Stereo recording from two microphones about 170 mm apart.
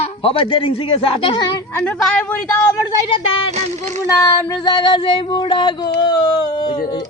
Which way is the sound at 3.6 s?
40° right (ahead or behind).